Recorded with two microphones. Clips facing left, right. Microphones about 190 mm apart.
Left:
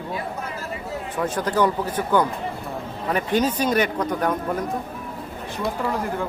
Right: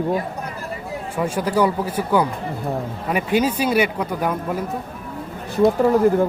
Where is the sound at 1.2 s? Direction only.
10° right (ahead or behind).